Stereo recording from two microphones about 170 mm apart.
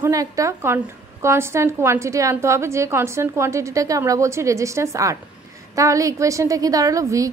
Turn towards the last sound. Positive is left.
turn(degrees=-20)  # may be behind; listen again after turning